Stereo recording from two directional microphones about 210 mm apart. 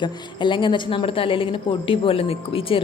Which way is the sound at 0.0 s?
20° left (ahead or behind).